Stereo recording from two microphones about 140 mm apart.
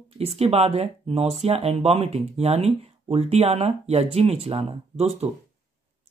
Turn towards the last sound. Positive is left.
turn(degrees=-50)  # may be behind; listen again after turning